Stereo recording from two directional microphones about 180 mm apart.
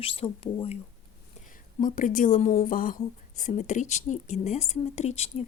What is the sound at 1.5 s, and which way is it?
Speech, 50° left (ahead or behind).